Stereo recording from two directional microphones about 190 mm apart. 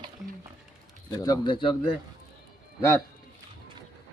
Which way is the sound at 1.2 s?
20° left (ahead or behind).